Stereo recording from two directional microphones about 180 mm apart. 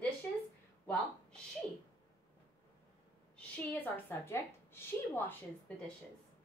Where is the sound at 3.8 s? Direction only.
10° left (ahead or behind).